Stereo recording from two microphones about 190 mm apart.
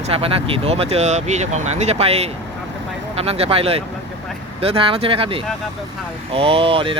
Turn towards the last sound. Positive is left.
turn(degrees=-30)  # may be behind; listen again after turning